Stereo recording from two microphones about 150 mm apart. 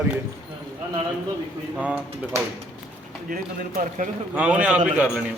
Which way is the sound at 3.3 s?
70° right (ahead or behind).